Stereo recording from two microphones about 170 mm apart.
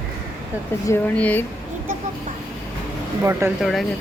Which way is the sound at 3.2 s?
15° right (ahead or behind).